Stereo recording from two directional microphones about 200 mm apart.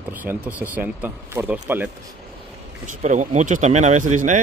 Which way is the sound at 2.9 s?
40° right (ahead or behind).